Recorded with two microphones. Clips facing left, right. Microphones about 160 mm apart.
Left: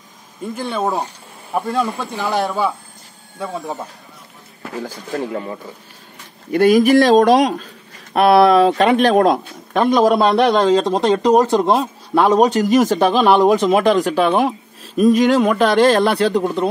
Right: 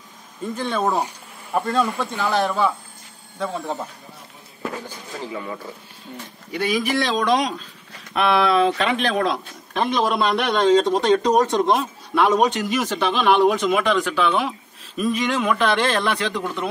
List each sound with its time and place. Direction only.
0.6 s speech: 10° left (ahead or behind)
4.8 s speech: 90° left
6.5 s speech: 45° left (ahead or behind)